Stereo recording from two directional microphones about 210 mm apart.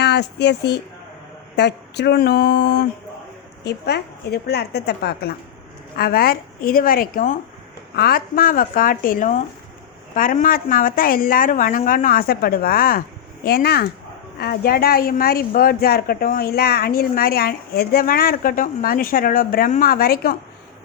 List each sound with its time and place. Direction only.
0.0 s a woman's voice: 55° left (ahead or behind)